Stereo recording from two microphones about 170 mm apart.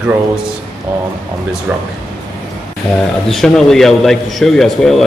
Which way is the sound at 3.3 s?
Centre (ahead or behind).